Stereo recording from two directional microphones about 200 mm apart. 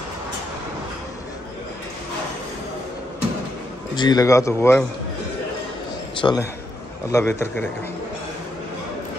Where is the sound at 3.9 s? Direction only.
20° left (ahead or behind).